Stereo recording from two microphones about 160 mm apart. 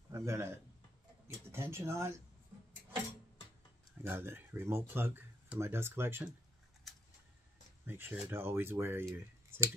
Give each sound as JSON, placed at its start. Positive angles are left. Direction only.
{"t": 0.1, "sound": "speech", "side_deg": -15}
{"t": 4.0, "sound": "speech", "side_deg": -15}
{"t": 7.8, "sound": "speech", "side_deg": -15}